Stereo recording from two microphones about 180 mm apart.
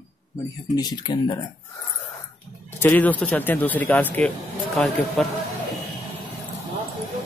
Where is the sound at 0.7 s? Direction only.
20° left (ahead or behind).